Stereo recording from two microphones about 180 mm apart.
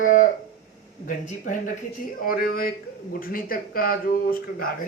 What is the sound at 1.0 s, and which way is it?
A man's voice, 45° left (ahead or behind).